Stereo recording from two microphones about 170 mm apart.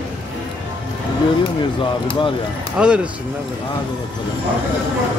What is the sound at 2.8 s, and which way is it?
Speech, 5° right (ahead or behind).